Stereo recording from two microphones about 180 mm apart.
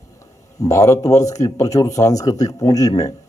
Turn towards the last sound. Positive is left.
turn(degrees=20)  # may be behind; listen again after turning